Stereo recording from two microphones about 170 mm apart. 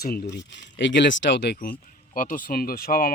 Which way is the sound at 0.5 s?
90° left.